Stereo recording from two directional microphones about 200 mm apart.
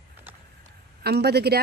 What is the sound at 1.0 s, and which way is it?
Speech, 55° right (ahead or behind).